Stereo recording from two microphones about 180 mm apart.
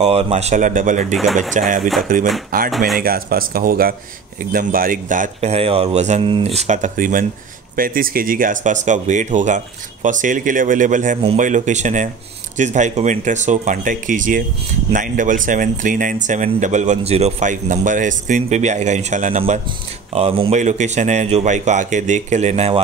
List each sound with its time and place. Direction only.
0.0 s a man's voice: 35° right (ahead or behind)
1.1 s speech: centre (ahead or behind)
2.5 s a man's voice: 50° right (ahead or behind)